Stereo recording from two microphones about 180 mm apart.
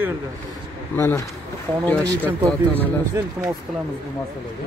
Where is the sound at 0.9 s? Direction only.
15° left (ahead or behind).